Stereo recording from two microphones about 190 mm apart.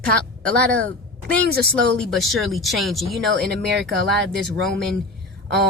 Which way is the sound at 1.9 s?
Centre (ahead or behind).